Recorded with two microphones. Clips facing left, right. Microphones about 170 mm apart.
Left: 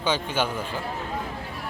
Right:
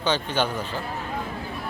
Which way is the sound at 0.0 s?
10° left (ahead or behind).